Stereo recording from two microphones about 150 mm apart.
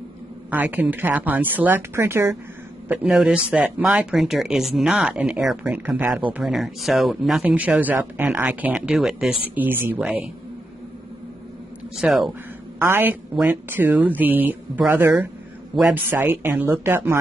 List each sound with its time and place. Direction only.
0.5 s speech: 10° right (ahead or behind)
2.9 s speech: 5° right (ahead or behind)
12.0 s speech: centre (ahead or behind)
12.8 s speech: 15° right (ahead or behind)